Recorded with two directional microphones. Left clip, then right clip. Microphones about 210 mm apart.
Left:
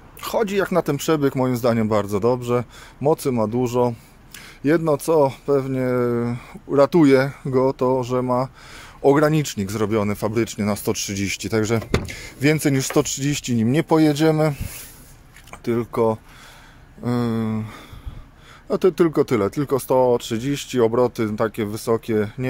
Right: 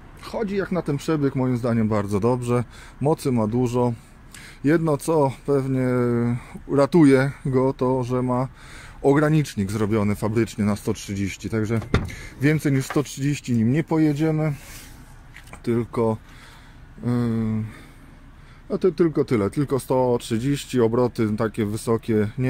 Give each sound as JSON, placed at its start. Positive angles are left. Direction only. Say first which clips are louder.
{"t": 0.2, "sound": "speech", "louder": "left 6 dB", "side_deg": 15}
{"t": 15.5, "sound": "speech", "louder": "left 2 dB", "side_deg": 5}